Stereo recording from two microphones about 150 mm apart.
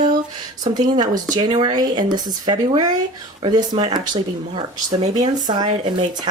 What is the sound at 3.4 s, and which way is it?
Speech, 35° right (ahead or behind).